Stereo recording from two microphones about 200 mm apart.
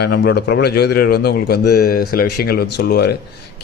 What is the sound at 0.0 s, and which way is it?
A man's voice, 55° left (ahead or behind).